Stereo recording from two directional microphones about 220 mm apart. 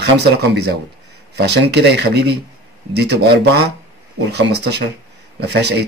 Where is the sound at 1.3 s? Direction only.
50° right (ahead or behind).